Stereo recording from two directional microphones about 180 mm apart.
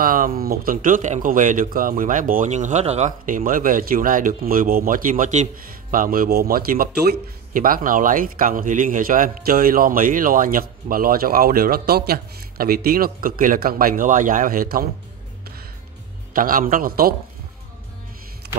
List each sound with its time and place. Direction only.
0.0 s speech: 50° right (ahead or behind)
16.3 s speech: 50° right (ahead or behind)